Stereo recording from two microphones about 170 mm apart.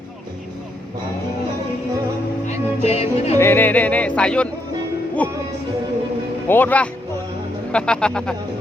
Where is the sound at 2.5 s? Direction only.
40° left (ahead or behind).